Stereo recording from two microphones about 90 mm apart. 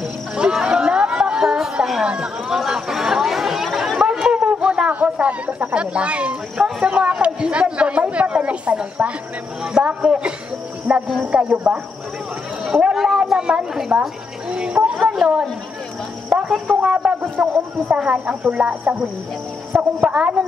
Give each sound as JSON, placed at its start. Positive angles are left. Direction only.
{"t": 0.4, "sound": "a sound", "side_deg": -10}
{"t": 9.8, "sound": "speech", "side_deg": -10}
{"t": 12.9, "sound": "speech", "side_deg": -5}
{"t": 14.5, "sound": "a sound", "side_deg": -10}
{"t": 16.8, "sound": "speech", "side_deg": -10}
{"t": 19.7, "sound": "a woman's voice", "side_deg": 0}
{"t": 20.1, "sound": "speech", "side_deg": -15}